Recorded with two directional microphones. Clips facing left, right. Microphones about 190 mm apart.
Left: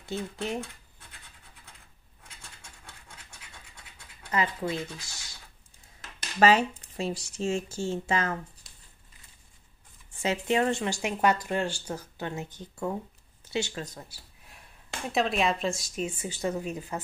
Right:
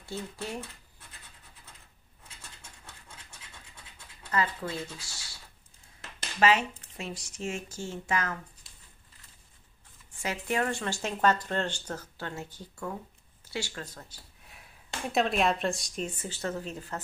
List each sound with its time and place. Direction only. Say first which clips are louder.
0.0 s speech: left 4 dB; 20° left (ahead or behind)
4.3 s speech: left 2 dB; 20° left (ahead or behind)
6.4 s speech: left 3 dB; 35° left (ahead or behind)
10.2 s speech: left 5 dB; 25° left (ahead or behind)